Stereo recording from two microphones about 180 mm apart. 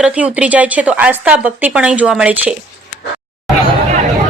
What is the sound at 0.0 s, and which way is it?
Speech, 5° right (ahead or behind).